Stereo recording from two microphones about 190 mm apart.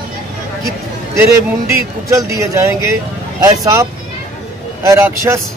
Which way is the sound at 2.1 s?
15° right (ahead or behind).